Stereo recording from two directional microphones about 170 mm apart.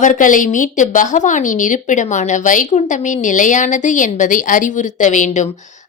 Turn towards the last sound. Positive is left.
turn(degrees=45)  # may be behind; listen again after turning